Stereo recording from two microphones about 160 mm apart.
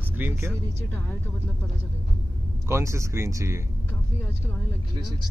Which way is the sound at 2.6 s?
15° right (ahead or behind).